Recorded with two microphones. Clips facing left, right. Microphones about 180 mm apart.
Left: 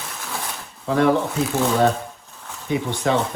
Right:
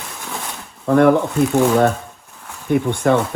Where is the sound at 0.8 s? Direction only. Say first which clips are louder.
Right 5 dB; 55° right (ahead or behind).